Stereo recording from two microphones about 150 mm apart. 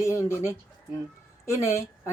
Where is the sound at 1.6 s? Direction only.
20° left (ahead or behind).